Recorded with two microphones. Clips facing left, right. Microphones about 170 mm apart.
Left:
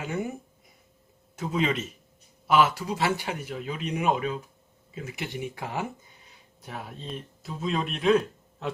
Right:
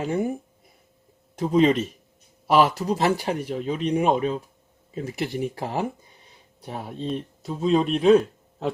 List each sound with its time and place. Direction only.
0.0 s speech: 35° right (ahead or behind)
1.4 s speech: 35° right (ahead or behind)